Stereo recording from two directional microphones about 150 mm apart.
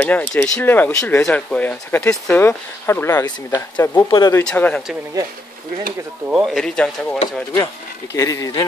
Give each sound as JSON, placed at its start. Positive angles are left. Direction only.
{"t": 0.0, "sound": "speech", "side_deg": 15}
{"t": 3.5, "sound": "speech", "side_deg": 25}
{"t": 4.5, "sound": "speech", "side_deg": 10}
{"t": 6.4, "sound": "speech", "side_deg": 5}
{"t": 7.5, "sound": "speech", "side_deg": 20}